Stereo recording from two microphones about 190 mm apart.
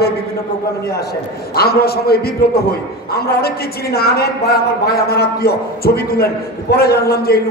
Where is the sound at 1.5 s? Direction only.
55° left (ahead or behind).